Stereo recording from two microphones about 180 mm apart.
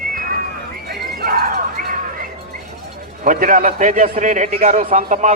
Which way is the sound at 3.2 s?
50° right (ahead or behind).